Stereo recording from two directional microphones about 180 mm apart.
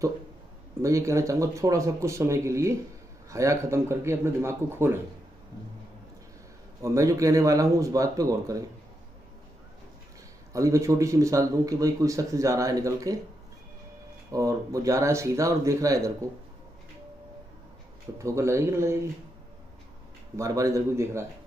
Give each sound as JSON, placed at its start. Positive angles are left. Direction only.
{"t": 0.8, "sound": "speech", "side_deg": -15}
{"t": 6.8, "sound": "speech", "side_deg": -15}
{"t": 10.5, "sound": "speech", "side_deg": -15}
{"t": 14.3, "sound": "speech", "side_deg": -20}
{"t": 18.2, "sound": "speech", "side_deg": -15}
{"t": 20.3, "sound": "speech", "side_deg": -20}